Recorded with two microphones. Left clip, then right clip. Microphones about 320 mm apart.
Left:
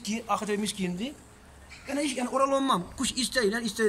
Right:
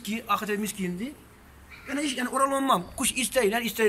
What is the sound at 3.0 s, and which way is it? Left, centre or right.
Speech, centre.